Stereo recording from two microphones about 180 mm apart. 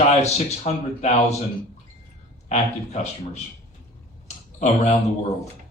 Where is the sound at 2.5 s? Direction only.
40° left (ahead or behind).